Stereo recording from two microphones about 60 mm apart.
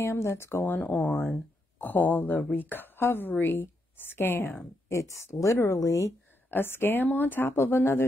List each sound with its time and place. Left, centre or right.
0.0 s speech: left
4.8 s speech: left
6.5 s speech: left